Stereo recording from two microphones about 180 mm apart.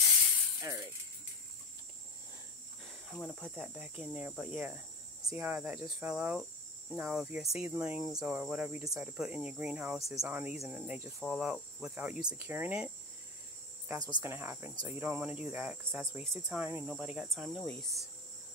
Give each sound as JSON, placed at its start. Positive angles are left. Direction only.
{"t": 3.2, "sound": "cricket", "side_deg": 5}
{"t": 5.2, "sound": "speech", "side_deg": -15}
{"t": 7.0, "sound": "cricket", "side_deg": -5}
{"t": 7.7, "sound": "speech", "side_deg": -10}
{"t": 11.1, "sound": "cricket", "side_deg": 0}
{"t": 14.1, "sound": "speech", "side_deg": -15}
{"t": 17.0, "sound": "cricket", "side_deg": -5}